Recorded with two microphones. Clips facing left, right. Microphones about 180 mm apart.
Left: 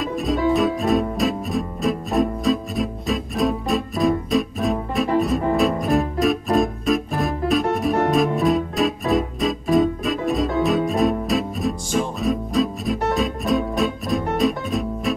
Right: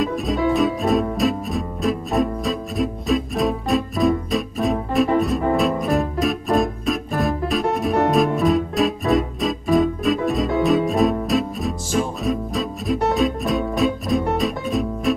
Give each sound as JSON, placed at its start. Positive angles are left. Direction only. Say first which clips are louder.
{"t": 0.0, "sound": "music", "louder": "even", "side_deg": 0}